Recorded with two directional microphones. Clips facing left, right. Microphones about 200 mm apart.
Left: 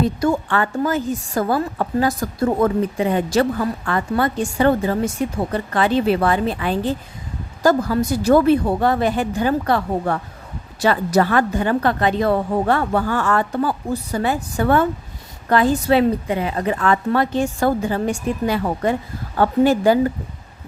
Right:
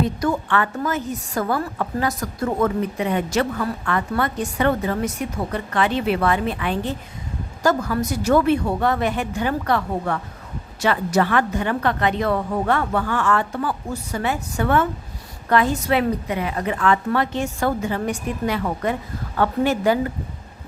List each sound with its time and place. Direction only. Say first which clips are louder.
0.0 s a woman's voice: left 3 dB; 30° left (ahead or behind)